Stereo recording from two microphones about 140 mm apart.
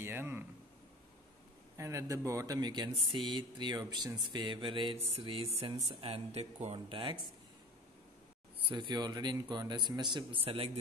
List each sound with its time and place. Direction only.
0.0 s speech: 15° right (ahead or behind)
1.8 s speech: 20° right (ahead or behind); by 7.2 s 40° right (ahead or behind)
8.6 s speech: 35° right (ahead or behind)